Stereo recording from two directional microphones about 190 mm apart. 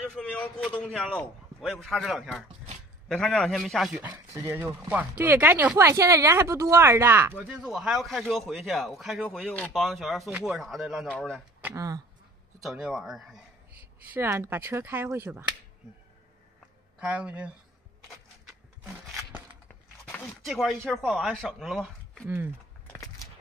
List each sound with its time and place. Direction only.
0.0 s speech: 5° left (ahead or behind)
11.6 s speech: 20° right (ahead or behind)
12.6 s speech: 5° right (ahead or behind)
14.1 s speech: 15° right (ahead or behind)
17.0 s speech: 5° right (ahead or behind)
18.5 s wood: 5° right (ahead or behind)
20.1 s speech: 5° left (ahead or behind)